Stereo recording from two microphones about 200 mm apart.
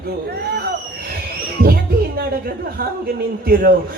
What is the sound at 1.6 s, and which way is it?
Music, 50° right (ahead or behind).